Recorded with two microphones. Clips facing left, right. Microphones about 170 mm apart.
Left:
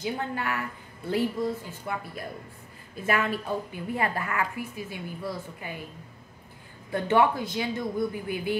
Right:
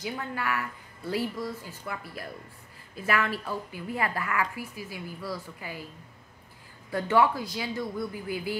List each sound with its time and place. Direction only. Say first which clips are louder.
0.0 s a woman's voice: left 3 dB; 30° left (ahead or behind)
6.9 s a woman's voice: left 1 dB; 25° left (ahead or behind)